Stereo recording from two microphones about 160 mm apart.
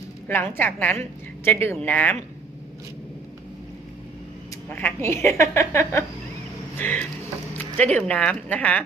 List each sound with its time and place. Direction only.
0.3 s speech: 15° left (ahead or behind)
4.7 s speech: 10° left (ahead or behind)